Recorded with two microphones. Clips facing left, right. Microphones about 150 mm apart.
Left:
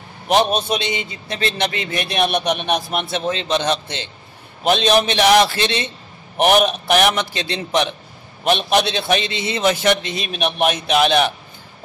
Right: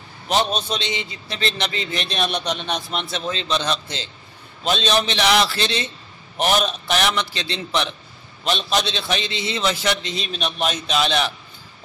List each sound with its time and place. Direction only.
0.6 s a man's voice: 55° left (ahead or behind)